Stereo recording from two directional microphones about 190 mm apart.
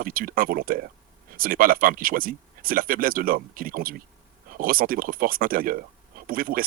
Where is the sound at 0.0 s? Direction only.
50° right (ahead or behind).